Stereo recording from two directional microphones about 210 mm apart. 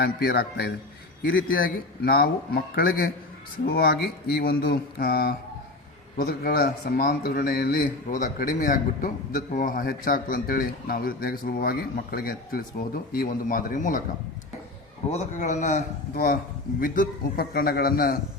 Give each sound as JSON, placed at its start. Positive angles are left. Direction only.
{"t": 0.0, "sound": "a man's voice", "side_deg": 50}
{"t": 15.1, "sound": "a man's voice", "side_deg": 35}